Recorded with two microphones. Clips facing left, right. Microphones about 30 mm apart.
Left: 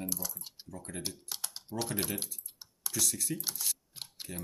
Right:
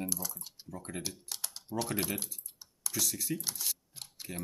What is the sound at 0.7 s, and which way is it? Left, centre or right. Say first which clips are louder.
Speech: right 2 dB; centre.